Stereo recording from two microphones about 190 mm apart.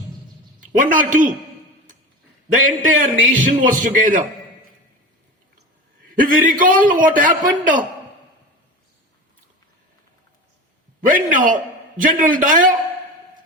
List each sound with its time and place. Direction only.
0.6 s a man's voice: 45° right (ahead or behind)
2.5 s a man's voice: 45° right (ahead or behind)
6.1 s a man's voice: 45° right (ahead or behind)
11.3 s a man's voice: 45° right (ahead or behind)